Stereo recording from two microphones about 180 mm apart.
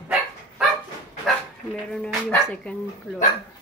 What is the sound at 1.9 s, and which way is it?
Speech, 5° left (ahead or behind).